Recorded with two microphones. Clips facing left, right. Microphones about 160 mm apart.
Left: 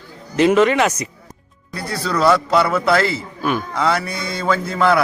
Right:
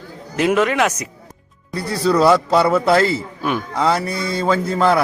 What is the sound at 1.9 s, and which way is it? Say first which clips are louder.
A man's voice: right 3 dB; 30° right (ahead or behind).